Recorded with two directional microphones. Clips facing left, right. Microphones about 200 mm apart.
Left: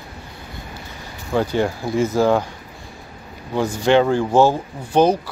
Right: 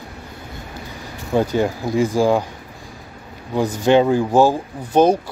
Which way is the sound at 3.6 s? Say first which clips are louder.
Right 1 dB; 15° right (ahead or behind).